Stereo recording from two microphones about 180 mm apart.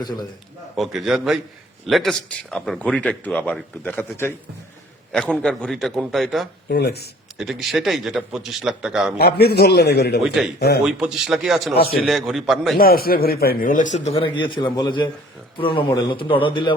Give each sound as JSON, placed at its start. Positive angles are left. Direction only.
{"t": 0.8, "sound": "a man's voice", "side_deg": 0}
{"t": 6.7, "sound": "a man's voice", "side_deg": 65}
{"t": 7.3, "sound": "a man's voice", "side_deg": 0}
{"t": 9.1, "sound": "a man's voice", "side_deg": 60}
{"t": 10.2, "sound": "a man's voice", "side_deg": 0}
{"t": 12.7, "sound": "a man's voice", "side_deg": 55}